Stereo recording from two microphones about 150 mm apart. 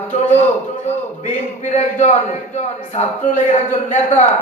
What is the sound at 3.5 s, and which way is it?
Speech, 50° left (ahead or behind).